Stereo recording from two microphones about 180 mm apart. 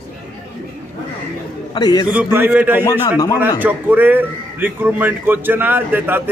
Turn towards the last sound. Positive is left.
turn(degrees=-10)  # may be behind; listen again after turning